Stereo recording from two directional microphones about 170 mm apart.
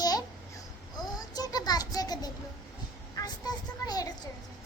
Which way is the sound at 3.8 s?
20° left (ahead or behind).